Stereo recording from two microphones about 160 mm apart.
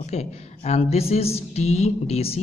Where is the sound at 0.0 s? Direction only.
40° left (ahead or behind).